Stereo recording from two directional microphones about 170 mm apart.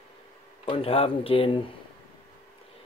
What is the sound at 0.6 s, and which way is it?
Speech, 30° left (ahead or behind).